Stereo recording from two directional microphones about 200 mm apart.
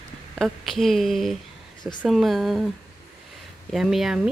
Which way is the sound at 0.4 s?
Centre (ahead or behind).